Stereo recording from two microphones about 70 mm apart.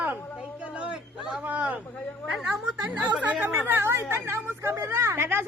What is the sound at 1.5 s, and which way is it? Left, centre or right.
Speech, right.